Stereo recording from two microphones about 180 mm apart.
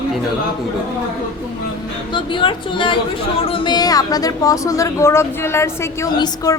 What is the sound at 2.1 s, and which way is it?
A woman's voice, 25° left (ahead or behind).